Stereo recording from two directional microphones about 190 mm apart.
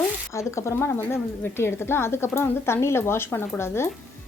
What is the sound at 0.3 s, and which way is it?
A woman's voice, 15° left (ahead or behind).